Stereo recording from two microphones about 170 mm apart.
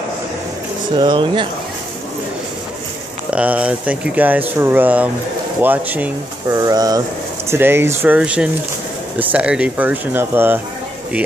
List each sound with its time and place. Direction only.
0.9 s speech: 30° right (ahead or behind)
3.3 s speech: 5° right (ahead or behind)
6.5 s speech: 20° right (ahead or behind)